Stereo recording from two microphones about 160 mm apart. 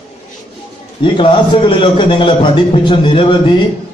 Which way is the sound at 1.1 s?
30° left (ahead or behind).